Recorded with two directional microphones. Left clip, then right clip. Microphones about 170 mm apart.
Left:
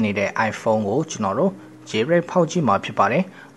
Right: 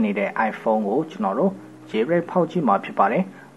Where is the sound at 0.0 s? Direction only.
20° left (ahead or behind).